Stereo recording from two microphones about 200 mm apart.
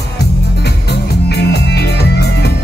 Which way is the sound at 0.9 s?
55° left (ahead or behind).